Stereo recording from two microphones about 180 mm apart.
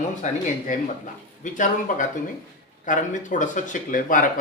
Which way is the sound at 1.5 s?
45° left (ahead or behind).